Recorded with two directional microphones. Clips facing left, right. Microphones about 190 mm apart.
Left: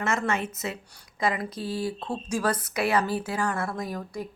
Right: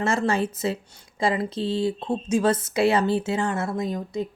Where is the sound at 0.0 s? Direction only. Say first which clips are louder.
Right 4 dB; 30° right (ahead or behind).